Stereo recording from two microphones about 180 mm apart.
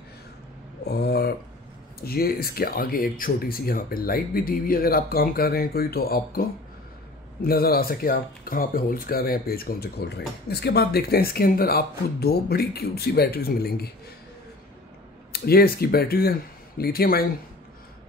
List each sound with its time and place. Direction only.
0.8 s a sound: 65° left (ahead or behind)
2.0 s speech: 55° left (ahead or behind)
15.3 s speech: 60° left (ahead or behind)